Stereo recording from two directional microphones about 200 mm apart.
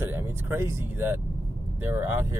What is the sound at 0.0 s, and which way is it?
Vehicle, 10° right (ahead or behind).